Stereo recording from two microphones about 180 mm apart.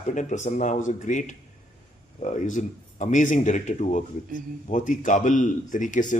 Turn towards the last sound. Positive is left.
turn(degrees=45)  # may be behind; listen again after turning